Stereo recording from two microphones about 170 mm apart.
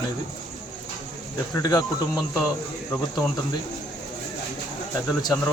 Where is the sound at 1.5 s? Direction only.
20° left (ahead or behind).